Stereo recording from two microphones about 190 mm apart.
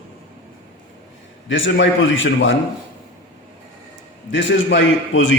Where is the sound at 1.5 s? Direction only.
85° left.